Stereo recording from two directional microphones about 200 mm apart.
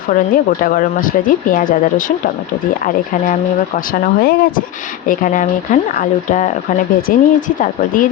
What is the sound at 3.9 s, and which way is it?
Speech, 50° left (ahead or behind).